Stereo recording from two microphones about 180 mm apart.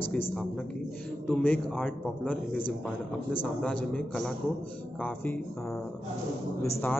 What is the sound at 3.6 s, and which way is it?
A man's voice, 5° left (ahead or behind).